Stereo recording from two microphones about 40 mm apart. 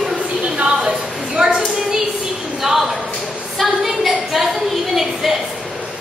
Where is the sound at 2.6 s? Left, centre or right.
Centre.